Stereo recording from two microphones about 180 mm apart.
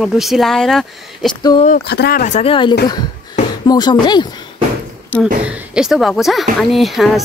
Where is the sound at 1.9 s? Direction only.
60° left (ahead or behind).